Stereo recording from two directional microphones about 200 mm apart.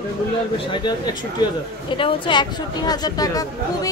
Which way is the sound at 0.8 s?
20° left (ahead or behind).